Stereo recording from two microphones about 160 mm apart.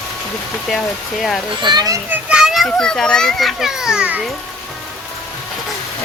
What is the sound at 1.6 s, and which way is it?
Speech, 25° right (ahead or behind).